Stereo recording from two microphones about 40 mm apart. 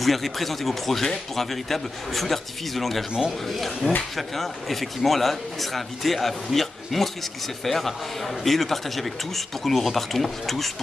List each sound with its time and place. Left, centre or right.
0.0 s speech: centre